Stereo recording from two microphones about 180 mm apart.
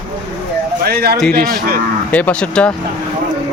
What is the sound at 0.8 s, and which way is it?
Speech, 60° right (ahead or behind).